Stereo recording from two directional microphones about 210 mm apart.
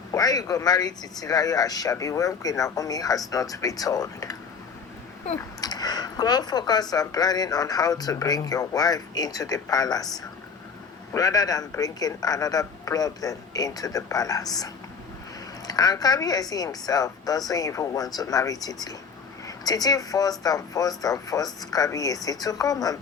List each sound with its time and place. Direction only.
0.1 s speech: 15° left (ahead or behind)
5.4 s speech: 20° left (ahead or behind)
11.1 s speech: 15° left (ahead or behind)